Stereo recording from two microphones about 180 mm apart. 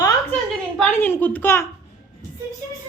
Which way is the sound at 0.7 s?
10° left (ahead or behind).